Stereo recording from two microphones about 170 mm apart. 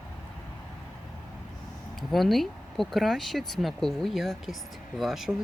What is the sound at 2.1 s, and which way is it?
Speech, centre (ahead or behind).